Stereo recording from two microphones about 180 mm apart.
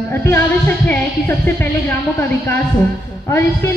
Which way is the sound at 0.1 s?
10° left (ahead or behind).